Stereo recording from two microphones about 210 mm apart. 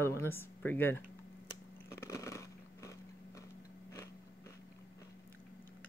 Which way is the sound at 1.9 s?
15° left (ahead or behind).